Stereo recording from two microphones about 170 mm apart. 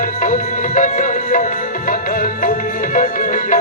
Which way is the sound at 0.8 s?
50° left (ahead or behind).